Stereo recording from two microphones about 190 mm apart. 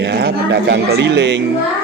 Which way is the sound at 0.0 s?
60° right (ahead or behind).